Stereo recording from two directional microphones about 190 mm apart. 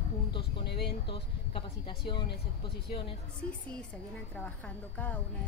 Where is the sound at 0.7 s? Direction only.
60° left (ahead or behind).